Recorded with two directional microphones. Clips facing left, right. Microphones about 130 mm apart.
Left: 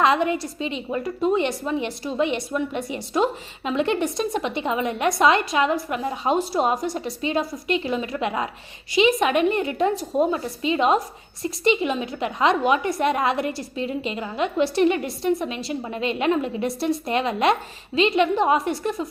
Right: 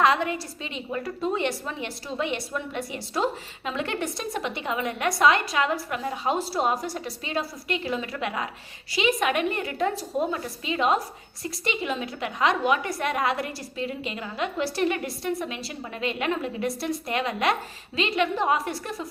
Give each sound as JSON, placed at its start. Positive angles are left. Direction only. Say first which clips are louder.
{"t": 0.0, "sound": "a woman's voice", "louder": "left 3 dB", "side_deg": 20}